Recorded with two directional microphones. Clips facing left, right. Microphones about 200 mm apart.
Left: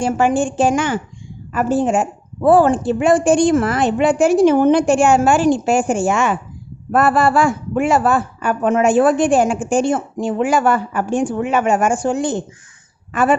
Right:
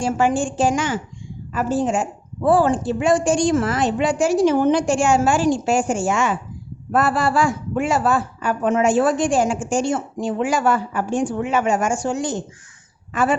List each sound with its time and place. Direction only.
0.0 s a woman's voice: 60° left (ahead or behind)